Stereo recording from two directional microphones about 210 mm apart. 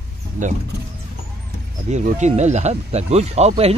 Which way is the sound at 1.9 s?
35° right (ahead or behind).